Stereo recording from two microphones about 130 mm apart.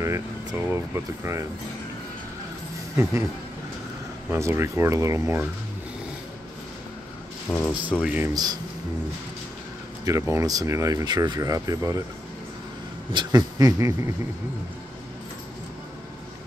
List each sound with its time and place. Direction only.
0.0 s speech: 20° right (ahead or behind)
3.0 s speech: 20° right (ahead or behind)
4.3 s speech: 20° right (ahead or behind)
7.4 s speech: 15° left (ahead or behind)
8.0 s speech: 10° right (ahead or behind)
8.3 s speech: 30° right (ahead or behind)
10.0 s speech: 20° right (ahead or behind)
13.1 s speech: 35° right (ahead or behind)